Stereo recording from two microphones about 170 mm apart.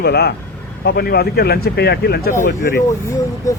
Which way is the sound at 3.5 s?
20° left (ahead or behind).